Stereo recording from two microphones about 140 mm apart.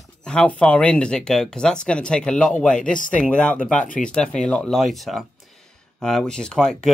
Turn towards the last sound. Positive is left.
turn(degrees=5)  # may be behind; listen again after turning